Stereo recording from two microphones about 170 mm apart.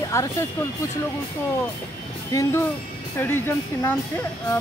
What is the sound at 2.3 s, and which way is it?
Speech, 20° left (ahead or behind).